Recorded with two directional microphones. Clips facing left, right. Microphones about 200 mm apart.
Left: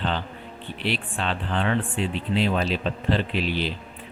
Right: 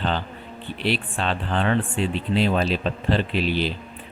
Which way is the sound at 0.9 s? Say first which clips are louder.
Right 3 dB; 40° right (ahead or behind).